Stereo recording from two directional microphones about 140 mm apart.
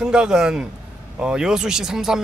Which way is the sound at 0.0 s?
5° right (ahead or behind).